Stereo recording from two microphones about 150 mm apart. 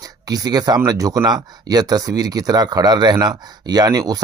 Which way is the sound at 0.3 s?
25° right (ahead or behind).